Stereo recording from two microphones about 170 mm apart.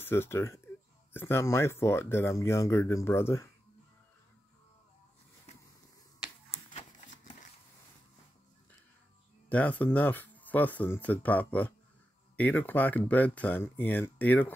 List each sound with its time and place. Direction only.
0.0 s speech: 15° left (ahead or behind)
6.5 s shuffling cards: 40° left (ahead or behind)
9.5 s speech: 10° left (ahead or behind)